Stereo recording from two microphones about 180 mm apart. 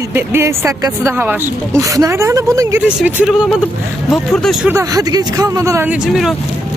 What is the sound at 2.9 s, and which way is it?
A woman's voice, 5° right (ahead or behind).